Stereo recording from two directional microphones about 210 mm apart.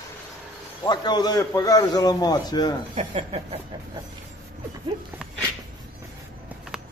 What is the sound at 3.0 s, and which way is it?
Speech, 30° right (ahead or behind).